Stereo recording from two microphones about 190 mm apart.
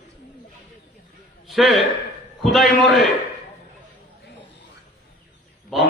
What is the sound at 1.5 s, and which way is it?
A man's voice, centre (ahead or behind).